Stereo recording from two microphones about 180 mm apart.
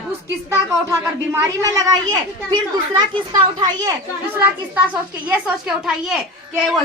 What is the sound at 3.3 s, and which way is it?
A woman's voice, 20° right (ahead or behind).